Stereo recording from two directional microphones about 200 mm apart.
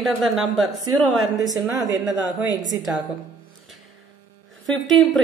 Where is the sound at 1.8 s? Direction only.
20° right (ahead or behind).